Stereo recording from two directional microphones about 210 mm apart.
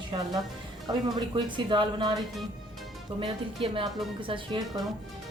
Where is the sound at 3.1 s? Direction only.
25° right (ahead or behind).